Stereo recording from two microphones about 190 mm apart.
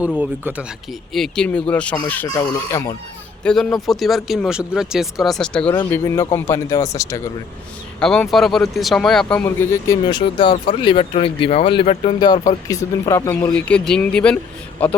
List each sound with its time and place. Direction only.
0.2 s speech: 5° right (ahead or behind)
1.1 s speech: 5° left (ahead or behind)
2.3 s speech: 20° left (ahead or behind)
3.4 s speech: 5° left (ahead or behind)
7.9 s speech: 5° left (ahead or behind)